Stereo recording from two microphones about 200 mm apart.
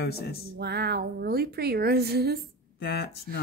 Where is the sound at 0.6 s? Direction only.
55° right (ahead or behind).